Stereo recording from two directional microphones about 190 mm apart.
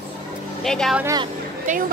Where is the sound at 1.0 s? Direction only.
15° right (ahead or behind).